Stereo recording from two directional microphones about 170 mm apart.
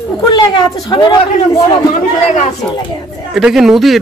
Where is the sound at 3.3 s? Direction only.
Centre (ahead or behind).